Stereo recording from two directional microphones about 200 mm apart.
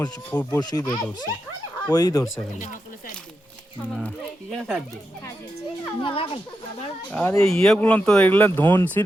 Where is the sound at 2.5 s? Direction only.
40° left (ahead or behind).